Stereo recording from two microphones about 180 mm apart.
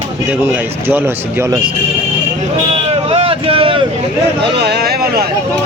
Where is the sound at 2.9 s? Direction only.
30° right (ahead or behind).